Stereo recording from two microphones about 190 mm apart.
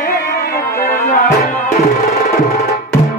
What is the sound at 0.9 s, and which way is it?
Music, 45° left (ahead or behind).